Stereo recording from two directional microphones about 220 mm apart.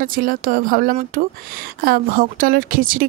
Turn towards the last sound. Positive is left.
turn(degrees=-40)  # may be behind; listen again after turning